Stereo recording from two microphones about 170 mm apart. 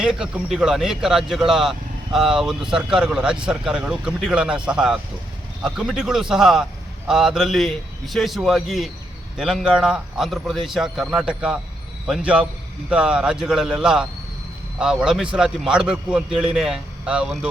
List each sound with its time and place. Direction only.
0.0 s a man's voice: 5° right (ahead or behind)